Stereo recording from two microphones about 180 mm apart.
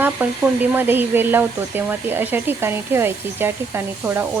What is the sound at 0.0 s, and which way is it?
Speech, 10° right (ahead or behind).